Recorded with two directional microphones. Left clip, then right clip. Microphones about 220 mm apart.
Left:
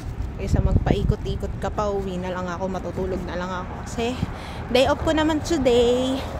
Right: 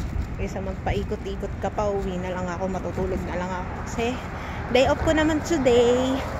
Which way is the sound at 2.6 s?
25° left (ahead or behind).